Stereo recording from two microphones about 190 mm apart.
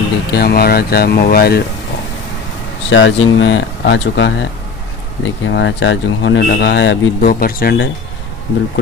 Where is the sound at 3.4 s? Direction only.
75° left (ahead or behind).